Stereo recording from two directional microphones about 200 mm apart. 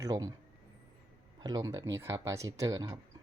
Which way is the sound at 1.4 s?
20° right (ahead or behind).